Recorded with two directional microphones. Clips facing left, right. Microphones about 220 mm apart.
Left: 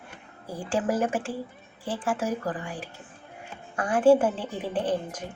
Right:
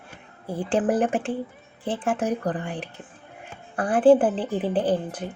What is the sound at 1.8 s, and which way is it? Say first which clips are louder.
Speech: right 3 dB; 20° right (ahead or behind).